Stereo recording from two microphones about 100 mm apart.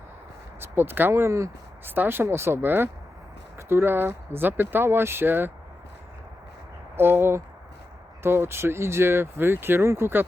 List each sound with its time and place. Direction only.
0.6 s speech: 20° right (ahead or behind)
6.9 s speech: 20° right (ahead or behind)